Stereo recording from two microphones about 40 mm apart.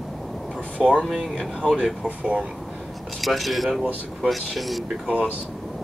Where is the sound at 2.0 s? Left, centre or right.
Right.